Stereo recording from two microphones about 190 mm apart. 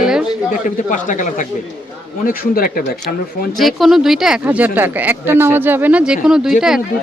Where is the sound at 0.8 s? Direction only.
40° left (ahead or behind).